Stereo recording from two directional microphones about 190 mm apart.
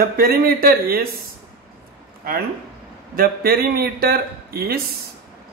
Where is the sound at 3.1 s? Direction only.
50° right (ahead or behind).